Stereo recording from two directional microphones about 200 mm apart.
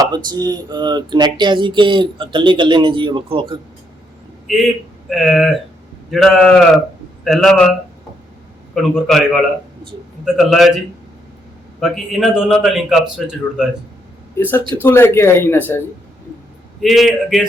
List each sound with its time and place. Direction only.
0.0 s speech: 20° right (ahead or behind)
4.4 s a man's voice: centre (ahead or behind)
8.7 s a man's voice: centre (ahead or behind)
11.8 s a man's voice: centre (ahead or behind)
14.8 s speech: 10° left (ahead or behind)
16.8 s a man's voice: centre (ahead or behind)